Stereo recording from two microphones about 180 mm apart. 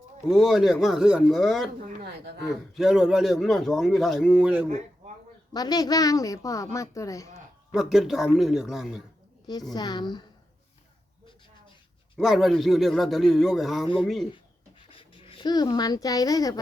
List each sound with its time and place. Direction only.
0.3 s a man's voice: centre (ahead or behind)
1.8 s a woman's voice: 60° right (ahead or behind)
2.4 s a man's voice: centre (ahead or behind)
5.5 s a woman's voice: 20° left (ahead or behind)
7.7 s a man's voice: centre (ahead or behind)
9.7 s a woman's voice: 25° left (ahead or behind)
12.1 s a man's voice: centre (ahead or behind)
14.8 s speech: 30° left (ahead or behind)